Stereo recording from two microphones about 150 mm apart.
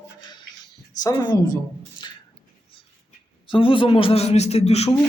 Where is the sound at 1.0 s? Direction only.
25° left (ahead or behind).